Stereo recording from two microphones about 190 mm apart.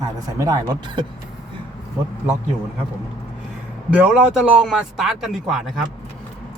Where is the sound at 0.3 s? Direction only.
20° right (ahead or behind).